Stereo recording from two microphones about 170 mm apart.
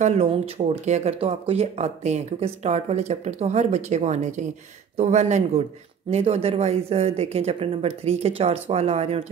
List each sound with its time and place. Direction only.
0.0 s speech: 35° right (ahead or behind)